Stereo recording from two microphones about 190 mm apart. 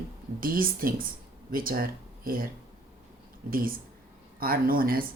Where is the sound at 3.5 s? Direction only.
50° right (ahead or behind).